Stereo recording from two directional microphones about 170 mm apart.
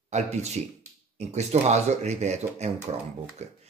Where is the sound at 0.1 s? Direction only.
40° right (ahead or behind).